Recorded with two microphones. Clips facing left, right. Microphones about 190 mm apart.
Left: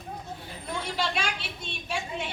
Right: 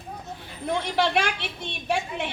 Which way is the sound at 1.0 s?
60° right (ahead or behind).